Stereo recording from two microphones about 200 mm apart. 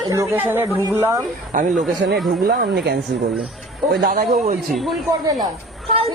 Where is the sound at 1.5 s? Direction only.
40° right (ahead or behind).